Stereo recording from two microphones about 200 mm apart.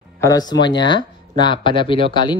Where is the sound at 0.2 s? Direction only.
20° left (ahead or behind).